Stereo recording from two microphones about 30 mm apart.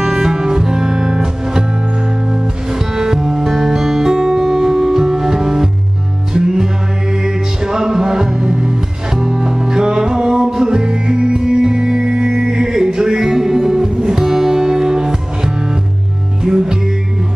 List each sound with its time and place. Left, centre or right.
0.0 s music: centre
2.8 s music: centre